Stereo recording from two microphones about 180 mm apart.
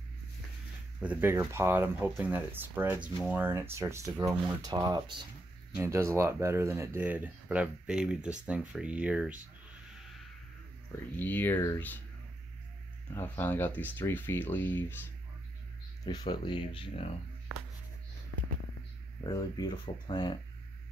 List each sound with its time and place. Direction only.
1.0 s speech: 10° right (ahead or behind)
11.1 s speech: 10° left (ahead or behind)
13.1 s speech: 10° left (ahead or behind)
16.1 s speech: 25° left (ahead or behind)
19.2 s speech: 20° left (ahead or behind)